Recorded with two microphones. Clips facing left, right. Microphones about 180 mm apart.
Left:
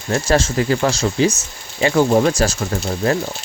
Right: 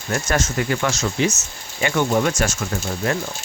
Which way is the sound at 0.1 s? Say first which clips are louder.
Left 5 dB; 30° left (ahead or behind).